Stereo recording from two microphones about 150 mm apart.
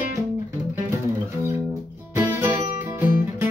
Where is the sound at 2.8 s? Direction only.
15° right (ahead or behind).